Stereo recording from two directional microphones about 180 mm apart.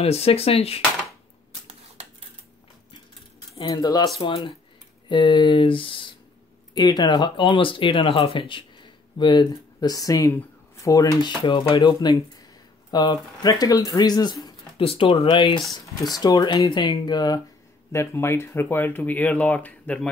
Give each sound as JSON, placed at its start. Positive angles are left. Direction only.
{"t": 0.0, "sound": "speech", "side_deg": 35}
{"t": 3.5, "sound": "speech", "side_deg": 25}